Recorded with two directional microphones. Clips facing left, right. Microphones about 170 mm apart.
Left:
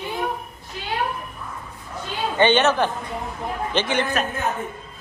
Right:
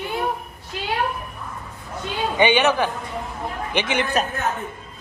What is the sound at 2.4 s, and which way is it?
Speech, 15° right (ahead or behind).